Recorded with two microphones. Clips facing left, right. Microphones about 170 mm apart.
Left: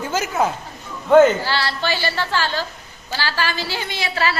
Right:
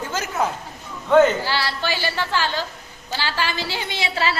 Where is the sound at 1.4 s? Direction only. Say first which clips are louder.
Left 2 dB; 10° right (ahead or behind).